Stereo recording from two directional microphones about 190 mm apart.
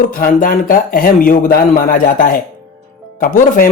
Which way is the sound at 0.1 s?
50° left (ahead or behind).